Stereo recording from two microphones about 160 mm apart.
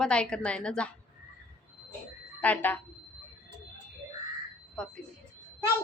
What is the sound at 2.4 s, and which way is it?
Speech, 10° left (ahead or behind).